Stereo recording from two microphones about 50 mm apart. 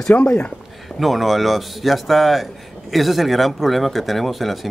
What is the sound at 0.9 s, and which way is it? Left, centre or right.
Speech, centre.